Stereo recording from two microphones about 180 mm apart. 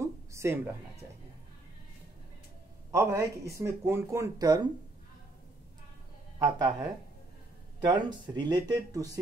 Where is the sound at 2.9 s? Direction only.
15° right (ahead or behind).